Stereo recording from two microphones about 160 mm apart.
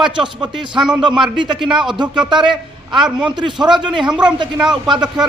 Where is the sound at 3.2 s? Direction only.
30° right (ahead or behind).